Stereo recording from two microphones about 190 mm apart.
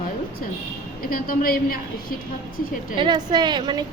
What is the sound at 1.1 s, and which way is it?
A woman's voice, 50° left (ahead or behind).